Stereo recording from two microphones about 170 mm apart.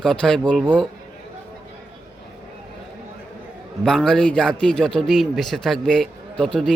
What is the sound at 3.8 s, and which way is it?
A man's voice, 5° left (ahead or behind).